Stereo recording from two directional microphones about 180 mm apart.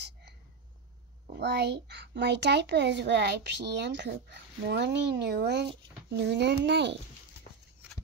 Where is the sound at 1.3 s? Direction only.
70° right (ahead or behind).